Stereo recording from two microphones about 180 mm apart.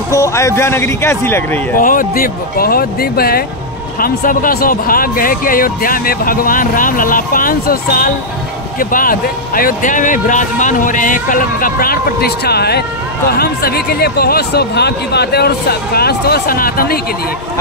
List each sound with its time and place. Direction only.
0.1 s speech: 15° left (ahead or behind)
1.8 s speech: 50° left (ahead or behind)